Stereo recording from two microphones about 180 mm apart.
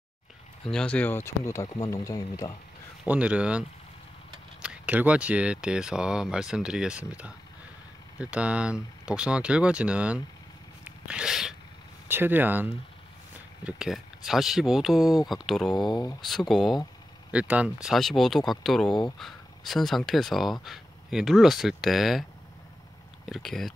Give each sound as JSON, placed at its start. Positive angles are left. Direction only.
{"t": 0.7, "sound": "speech", "side_deg": 5}
{"t": 3.1, "sound": "speech", "side_deg": -5}
{"t": 10.8, "sound": "zipper", "side_deg": -5}
{"t": 12.1, "sound": "speech", "side_deg": -10}
{"t": 15.9, "sound": "speech", "side_deg": 20}
{"t": 16.3, "sound": "speech", "side_deg": 0}
{"t": 23.2, "sound": "speech", "side_deg": 0}